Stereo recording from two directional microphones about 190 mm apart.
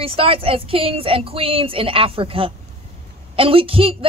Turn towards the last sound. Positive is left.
turn(degrees=-30)  # may be behind; listen again after turning